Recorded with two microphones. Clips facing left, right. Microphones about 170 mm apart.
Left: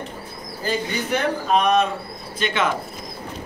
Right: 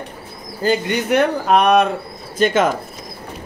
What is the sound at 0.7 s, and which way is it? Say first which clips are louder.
Speech: right 6 dB; 70° right (ahead or behind).